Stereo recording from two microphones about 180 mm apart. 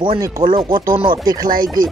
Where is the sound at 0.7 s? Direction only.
50° right (ahead or behind).